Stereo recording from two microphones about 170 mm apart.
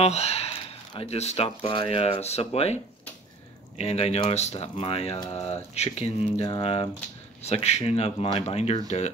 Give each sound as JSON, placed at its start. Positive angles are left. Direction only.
{"t": 0.0, "sound": "speech", "side_deg": 40}